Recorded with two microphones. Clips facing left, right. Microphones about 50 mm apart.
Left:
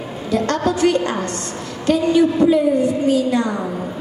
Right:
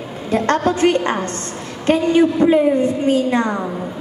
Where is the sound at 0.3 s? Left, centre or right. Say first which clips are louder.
Right 2 dB; right.